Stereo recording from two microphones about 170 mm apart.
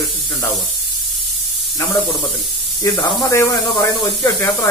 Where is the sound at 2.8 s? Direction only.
15° left (ahead or behind).